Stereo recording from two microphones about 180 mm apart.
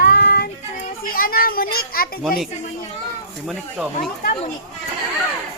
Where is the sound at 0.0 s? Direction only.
55° left (ahead or behind).